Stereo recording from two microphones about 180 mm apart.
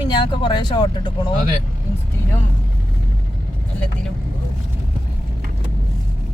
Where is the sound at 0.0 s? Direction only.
25° left (ahead or behind).